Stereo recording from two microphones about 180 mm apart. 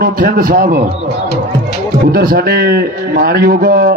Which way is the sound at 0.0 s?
50° right (ahead or behind).